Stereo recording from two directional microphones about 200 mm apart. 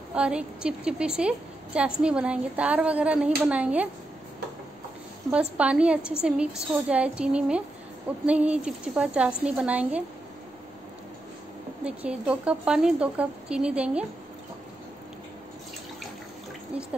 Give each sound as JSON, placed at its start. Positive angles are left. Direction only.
{"t": 0.1, "sound": "a woman's voice", "side_deg": -5}
{"t": 5.3, "sound": "a woman's voice", "side_deg": -5}
{"t": 11.8, "sound": "a woman's voice", "side_deg": -5}